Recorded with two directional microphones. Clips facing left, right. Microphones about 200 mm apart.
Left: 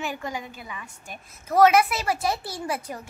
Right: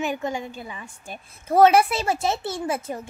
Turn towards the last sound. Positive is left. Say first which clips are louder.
# right 3 dB
turn(degrees=-25)  # may be behind; listen again after turning